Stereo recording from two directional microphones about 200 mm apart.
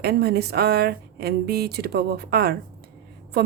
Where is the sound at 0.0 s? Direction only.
50° right (ahead or behind).